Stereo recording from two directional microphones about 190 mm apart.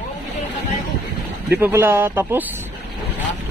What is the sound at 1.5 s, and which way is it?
Speech, 10° right (ahead or behind).